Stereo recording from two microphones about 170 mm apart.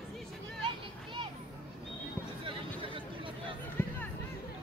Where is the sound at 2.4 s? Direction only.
30° right (ahead or behind).